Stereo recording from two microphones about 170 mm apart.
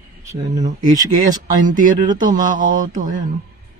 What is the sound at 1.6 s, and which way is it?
Mantra, 50° right (ahead or behind).